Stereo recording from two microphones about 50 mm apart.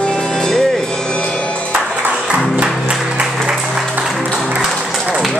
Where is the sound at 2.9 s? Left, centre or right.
Centre.